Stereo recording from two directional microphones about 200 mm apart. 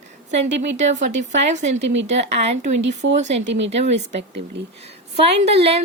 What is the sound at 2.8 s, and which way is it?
Speech, 65° right (ahead or behind).